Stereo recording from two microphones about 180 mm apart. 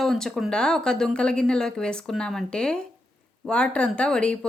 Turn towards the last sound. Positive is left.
turn(degrees=5)  # may be behind; listen again after turning